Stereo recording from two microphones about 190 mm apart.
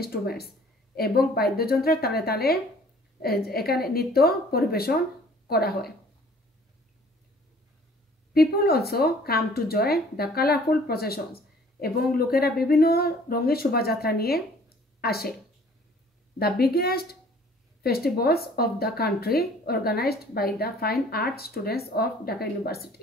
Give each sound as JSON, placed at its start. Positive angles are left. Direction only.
{"t": 0.0, "sound": "a woman's voice", "side_deg": 55}
{"t": 8.3, "sound": "a woman's voice", "side_deg": 55}
{"t": 16.3, "sound": "a woman's voice", "side_deg": 55}